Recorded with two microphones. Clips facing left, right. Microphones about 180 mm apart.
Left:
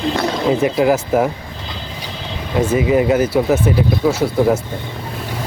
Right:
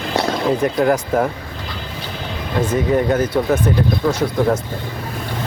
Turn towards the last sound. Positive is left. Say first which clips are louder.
# left 2 dB
turn(degrees=5)  # may be behind; listen again after turning